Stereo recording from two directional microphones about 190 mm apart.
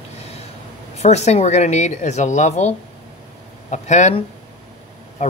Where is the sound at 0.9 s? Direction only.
35° left (ahead or behind).